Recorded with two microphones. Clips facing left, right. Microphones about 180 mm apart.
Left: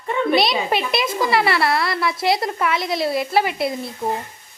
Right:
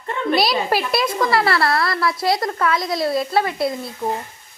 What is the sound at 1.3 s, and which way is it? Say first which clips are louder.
Speech: left 1 dB; 25° left (ahead or behind).